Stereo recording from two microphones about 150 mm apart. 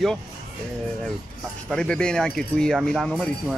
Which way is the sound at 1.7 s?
5° left (ahead or behind).